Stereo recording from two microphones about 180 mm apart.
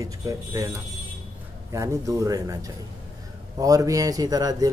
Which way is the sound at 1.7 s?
15° right (ahead or behind).